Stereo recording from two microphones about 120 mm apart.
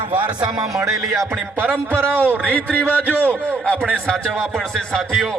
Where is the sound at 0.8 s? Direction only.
25° right (ahead or behind).